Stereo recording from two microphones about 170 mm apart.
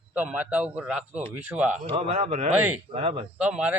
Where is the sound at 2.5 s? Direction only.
5° right (ahead or behind).